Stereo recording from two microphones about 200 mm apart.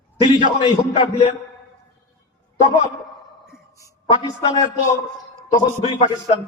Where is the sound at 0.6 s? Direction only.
25° left (ahead or behind).